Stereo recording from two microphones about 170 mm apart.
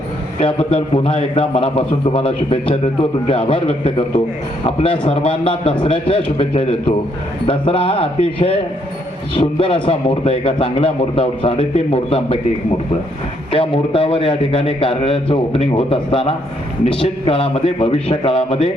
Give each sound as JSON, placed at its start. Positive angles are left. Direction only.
{"t": 0.3, "sound": "a man's voice", "side_deg": 30}